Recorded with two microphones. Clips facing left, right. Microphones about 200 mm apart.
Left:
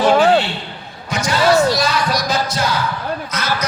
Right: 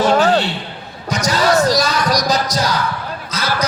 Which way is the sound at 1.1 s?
40° right (ahead or behind).